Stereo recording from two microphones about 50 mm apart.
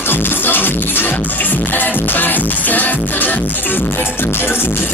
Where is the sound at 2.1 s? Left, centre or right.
Left.